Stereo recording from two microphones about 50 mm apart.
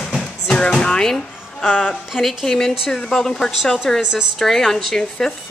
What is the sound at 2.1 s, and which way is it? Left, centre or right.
A woman's voice, centre.